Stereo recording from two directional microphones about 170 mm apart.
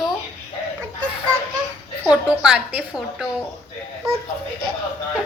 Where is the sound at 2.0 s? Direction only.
5° right (ahead or behind).